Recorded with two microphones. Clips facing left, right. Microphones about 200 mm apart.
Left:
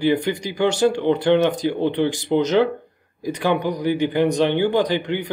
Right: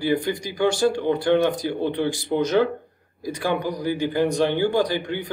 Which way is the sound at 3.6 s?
20° left (ahead or behind).